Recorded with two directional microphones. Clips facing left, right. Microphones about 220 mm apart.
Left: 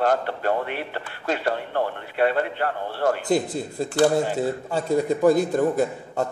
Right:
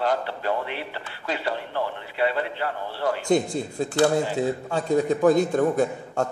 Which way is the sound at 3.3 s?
5° left (ahead or behind).